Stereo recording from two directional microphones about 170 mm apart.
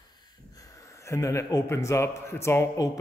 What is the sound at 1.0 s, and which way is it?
A man's voice, 15° left (ahead or behind).